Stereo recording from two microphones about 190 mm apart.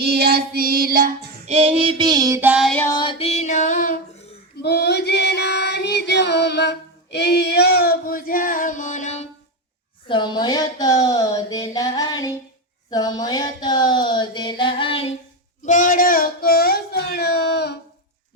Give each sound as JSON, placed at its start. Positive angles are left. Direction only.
{"t": 0.0, "sound": "child singing", "side_deg": -55}
{"t": 1.5, "sound": "child singing", "side_deg": -30}
{"t": 2.8, "sound": "female singing", "side_deg": 25}
{"t": 4.6, "sound": "female singing", "side_deg": 60}
{"t": 10.1, "sound": "a sound", "side_deg": 25}
{"t": 15.6, "sound": "a sound", "side_deg": 45}